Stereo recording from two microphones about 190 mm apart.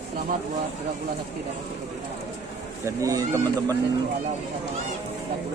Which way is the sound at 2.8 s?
20° right (ahead or behind).